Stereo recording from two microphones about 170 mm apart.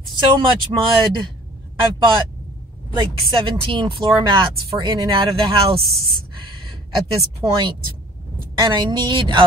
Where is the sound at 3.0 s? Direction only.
30° right (ahead or behind).